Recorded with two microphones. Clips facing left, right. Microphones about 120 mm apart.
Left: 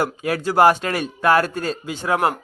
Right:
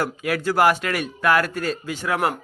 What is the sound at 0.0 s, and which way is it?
A man's voice, 30° left (ahead or behind).